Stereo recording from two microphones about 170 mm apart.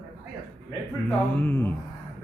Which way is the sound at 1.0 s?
10° left (ahead or behind).